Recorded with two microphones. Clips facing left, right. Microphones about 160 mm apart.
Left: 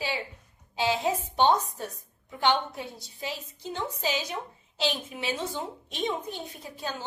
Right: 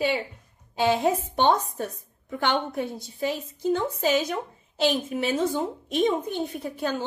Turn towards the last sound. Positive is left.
turn(degrees=-60)  # may be behind; listen again after turning